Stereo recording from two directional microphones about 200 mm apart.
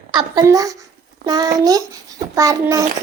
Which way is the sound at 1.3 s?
20° right (ahead or behind).